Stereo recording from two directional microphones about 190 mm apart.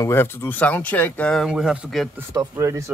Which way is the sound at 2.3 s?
20° right (ahead or behind).